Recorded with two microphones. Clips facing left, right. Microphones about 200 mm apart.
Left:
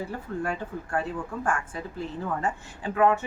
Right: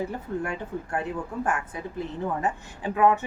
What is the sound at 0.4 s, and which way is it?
Speech, 20° right (ahead or behind).